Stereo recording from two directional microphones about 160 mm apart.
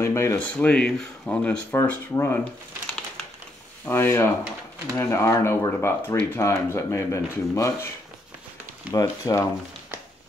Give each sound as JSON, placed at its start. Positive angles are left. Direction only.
{"t": 0.0, "sound": "speech", "side_deg": 15}
{"t": 3.8, "sound": "speech", "side_deg": 15}
{"t": 8.9, "sound": "speech", "side_deg": 20}